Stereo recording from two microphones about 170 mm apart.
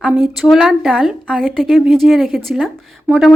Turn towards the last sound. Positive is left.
turn(degrees=-5)  # may be behind; listen again after turning